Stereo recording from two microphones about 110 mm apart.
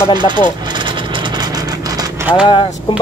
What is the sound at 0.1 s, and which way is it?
Speech, 45° right (ahead or behind).